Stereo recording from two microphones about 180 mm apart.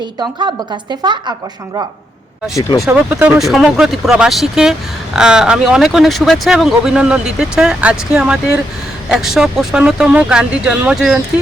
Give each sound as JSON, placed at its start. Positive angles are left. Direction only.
{"t": 0.0, "sound": "a woman's voice", "side_deg": -25}
{"t": 2.6, "sound": "speech", "side_deg": 15}
{"t": 2.8, "sound": "speech", "side_deg": -10}